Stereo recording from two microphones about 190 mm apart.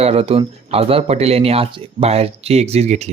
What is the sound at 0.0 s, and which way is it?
Speech, 30° right (ahead or behind).